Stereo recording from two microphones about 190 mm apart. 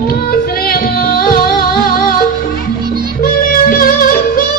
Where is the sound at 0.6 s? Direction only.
50° left (ahead or behind).